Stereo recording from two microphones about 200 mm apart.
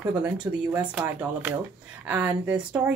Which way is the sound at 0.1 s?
20° right (ahead or behind).